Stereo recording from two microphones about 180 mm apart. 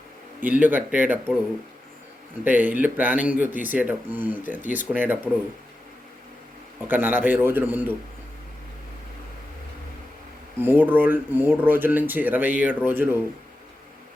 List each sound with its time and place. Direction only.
0.6 s speech: 10° right (ahead or behind)
2.4 s speech: 10° right (ahead or behind)
4.6 s speech: 45° left (ahead or behind)
4.9 s speech: 10° right (ahead or behind)
6.8 s speech: 10° right (ahead or behind)
10.6 s speech: 10° right (ahead or behind)